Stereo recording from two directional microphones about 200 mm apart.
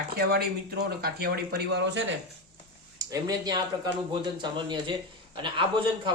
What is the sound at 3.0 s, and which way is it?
Speech, 20° right (ahead or behind).